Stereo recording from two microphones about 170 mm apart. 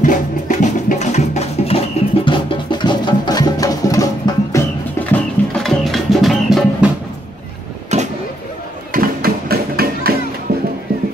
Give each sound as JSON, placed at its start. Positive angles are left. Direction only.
{"t": 0.0, "sound": "music", "side_deg": 50}
{"t": 2.2, "sound": "music", "side_deg": 30}
{"t": 7.9, "sound": "vehicle", "side_deg": -40}
{"t": 8.9, "sound": "music", "side_deg": -60}